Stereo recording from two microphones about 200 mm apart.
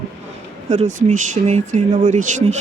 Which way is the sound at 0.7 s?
35° right (ahead or behind).